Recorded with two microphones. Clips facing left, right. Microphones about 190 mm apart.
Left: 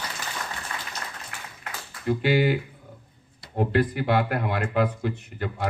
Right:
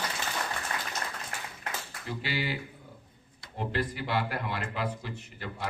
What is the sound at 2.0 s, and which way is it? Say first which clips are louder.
Speech: left 12 dB; 55° left (ahead or behind).